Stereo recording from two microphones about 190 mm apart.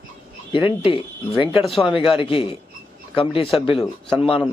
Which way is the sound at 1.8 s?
Centre (ahead or behind).